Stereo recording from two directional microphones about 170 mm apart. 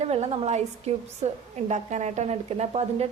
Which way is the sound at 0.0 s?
40° right (ahead or behind).